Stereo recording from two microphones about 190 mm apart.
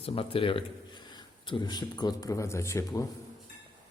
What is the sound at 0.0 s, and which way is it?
Speech, 30° left (ahead or behind).